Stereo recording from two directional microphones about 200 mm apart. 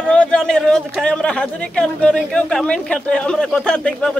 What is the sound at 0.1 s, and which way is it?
Speech, 5° left (ahead or behind).